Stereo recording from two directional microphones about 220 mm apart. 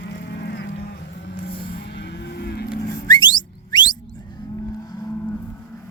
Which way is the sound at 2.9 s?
20° left (ahead or behind).